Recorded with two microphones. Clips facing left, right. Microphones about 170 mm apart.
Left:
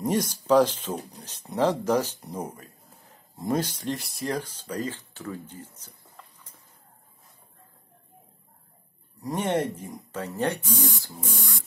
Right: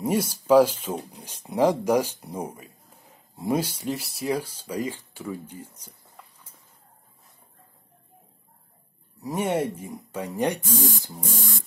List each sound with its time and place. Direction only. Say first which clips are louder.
0.0 s speech: right 1 dB; 10° right (ahead or behind)
9.2 s speech: right 1 dB; 10° right (ahead or behind)